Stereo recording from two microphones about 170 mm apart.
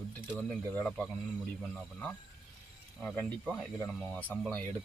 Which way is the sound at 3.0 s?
5° left (ahead or behind).